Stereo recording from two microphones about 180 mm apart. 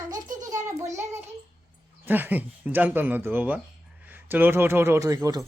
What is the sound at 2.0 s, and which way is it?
Speech, 10° right (ahead or behind).